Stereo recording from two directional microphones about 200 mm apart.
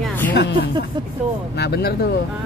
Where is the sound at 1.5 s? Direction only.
55° left (ahead or behind).